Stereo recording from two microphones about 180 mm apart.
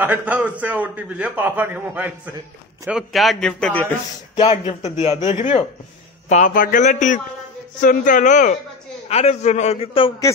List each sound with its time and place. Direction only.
0.0 s a man's voice: 10° right (ahead or behind); by 4.0 s 5° left (ahead or behind)
4.4 s a man's voice: 35° left (ahead or behind)